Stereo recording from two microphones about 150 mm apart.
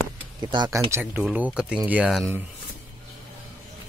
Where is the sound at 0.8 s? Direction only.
15° right (ahead or behind).